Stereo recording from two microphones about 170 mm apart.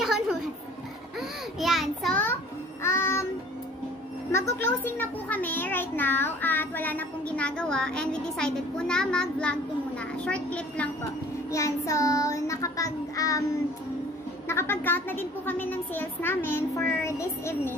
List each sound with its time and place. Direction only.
0.0 s a sound: 5° right (ahead or behind)
1.6 s a child's voice: centre (ahead or behind)
2.8 s child singing: 15° left (ahead or behind)
4.3 s a child's voice: 15° left (ahead or behind)
11.5 s child singing: 20° left (ahead or behind)
14.5 s a child's voice: 15° left (ahead or behind)